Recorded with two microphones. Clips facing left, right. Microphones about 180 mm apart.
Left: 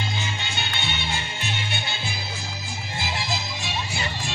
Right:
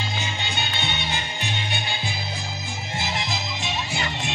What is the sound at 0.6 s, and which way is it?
Music, 20° right (ahead or behind).